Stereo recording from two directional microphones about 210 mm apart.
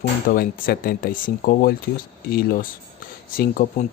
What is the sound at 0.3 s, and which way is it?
Speech, 45° left (ahead or behind).